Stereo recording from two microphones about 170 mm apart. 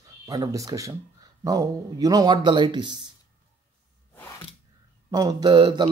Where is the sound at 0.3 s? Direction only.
20° right (ahead or behind).